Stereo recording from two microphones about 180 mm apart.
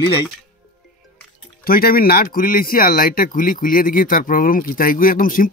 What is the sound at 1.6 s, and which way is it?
Speech, 55° left (ahead or behind).